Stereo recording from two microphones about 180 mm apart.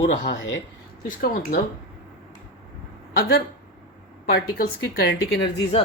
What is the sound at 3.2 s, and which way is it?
Speech, 55° left (ahead or behind).